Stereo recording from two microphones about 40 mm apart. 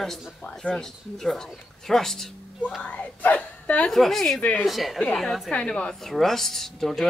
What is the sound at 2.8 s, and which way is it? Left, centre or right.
Speech, left.